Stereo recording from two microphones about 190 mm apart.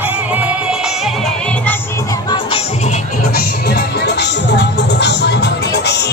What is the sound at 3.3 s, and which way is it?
Music, 55° left (ahead or behind).